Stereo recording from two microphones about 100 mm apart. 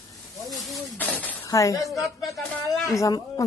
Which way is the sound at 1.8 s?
Centre (ahead or behind).